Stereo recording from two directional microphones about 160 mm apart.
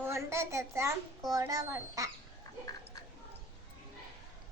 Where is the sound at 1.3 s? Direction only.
20° right (ahead or behind).